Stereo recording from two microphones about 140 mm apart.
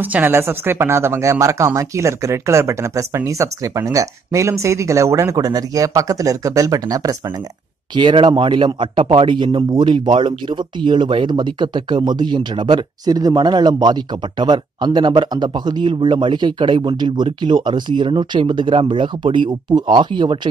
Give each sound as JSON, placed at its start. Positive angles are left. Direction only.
{"t": 0.0, "sound": "speech", "side_deg": -15}